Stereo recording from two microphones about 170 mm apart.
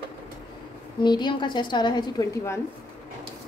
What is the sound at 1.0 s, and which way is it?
A woman's voice, 25° left (ahead or behind).